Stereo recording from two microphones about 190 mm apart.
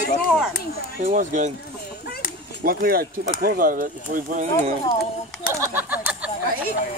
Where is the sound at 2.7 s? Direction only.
50° right (ahead or behind).